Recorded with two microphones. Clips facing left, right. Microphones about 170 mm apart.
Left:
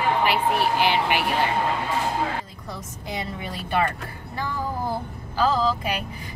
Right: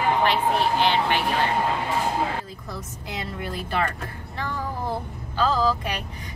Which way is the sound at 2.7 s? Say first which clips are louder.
Left 3 dB; centre (ahead or behind).